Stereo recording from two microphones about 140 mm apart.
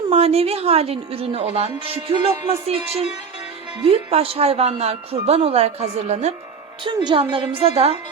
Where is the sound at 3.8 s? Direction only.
40° right (ahead or behind).